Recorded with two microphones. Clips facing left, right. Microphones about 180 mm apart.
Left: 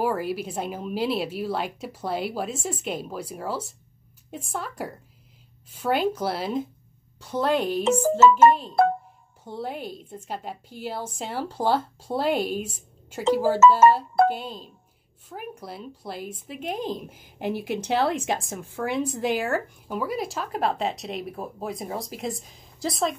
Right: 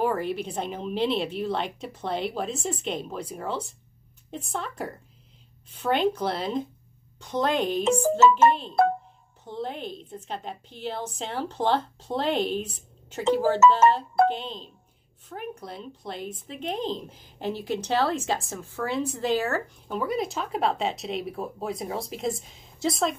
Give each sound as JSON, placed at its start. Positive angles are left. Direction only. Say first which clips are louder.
{"t": 0.0, "sound": "speech", "louder": "even", "side_deg": 5}
{"t": 8.2, "sound": "speech", "louder": "left 4 dB", "side_deg": 40}
{"t": 9.4, "sound": "speech", "louder": "even", "side_deg": 10}